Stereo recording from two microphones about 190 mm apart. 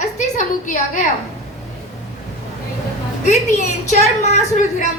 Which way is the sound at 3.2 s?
40° left (ahead or behind).